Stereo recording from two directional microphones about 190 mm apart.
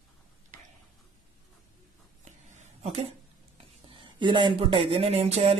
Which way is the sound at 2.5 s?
35° right (ahead or behind).